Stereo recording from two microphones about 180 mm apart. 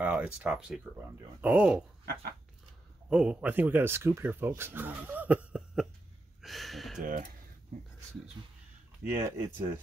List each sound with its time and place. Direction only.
0.0 s speech: 5° right (ahead or behind)
3.1 s speech: 5° right (ahead or behind)
6.4 s a sound: centre (ahead or behind)
7.0 s speech: 50° right (ahead or behind)
9.0 s speech: 15° right (ahead or behind)